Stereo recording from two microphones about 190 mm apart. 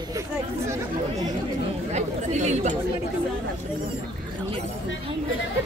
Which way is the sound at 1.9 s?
35° right (ahead or behind).